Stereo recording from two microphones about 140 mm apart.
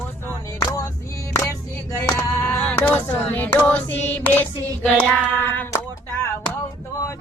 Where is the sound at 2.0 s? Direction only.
15° left (ahead or behind).